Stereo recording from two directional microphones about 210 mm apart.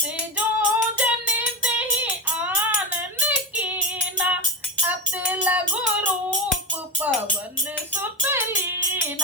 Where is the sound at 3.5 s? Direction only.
5° right (ahead or behind).